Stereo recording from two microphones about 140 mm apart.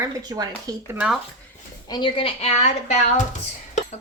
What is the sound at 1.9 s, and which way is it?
Speech, 35° left (ahead or behind).